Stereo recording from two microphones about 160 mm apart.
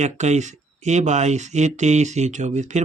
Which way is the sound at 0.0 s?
45° right (ahead or behind).